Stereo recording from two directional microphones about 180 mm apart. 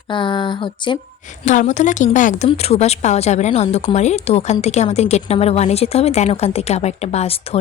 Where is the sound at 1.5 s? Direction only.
45° left (ahead or behind).